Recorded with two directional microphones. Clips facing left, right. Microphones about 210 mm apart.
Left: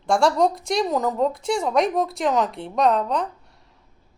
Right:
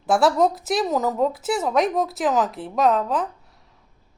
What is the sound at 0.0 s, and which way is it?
A woman's voice, 5° right (ahead or behind).